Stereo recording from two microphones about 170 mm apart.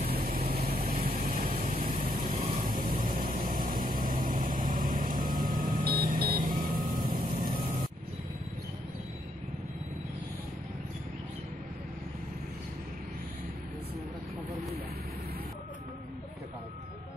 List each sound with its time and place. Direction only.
0.0 s vehicle: 60° right (ahead or behind)
1.5 s vehicle: 35° right (ahead or behind)
1.8 s vehicle: 55° right (ahead or behind)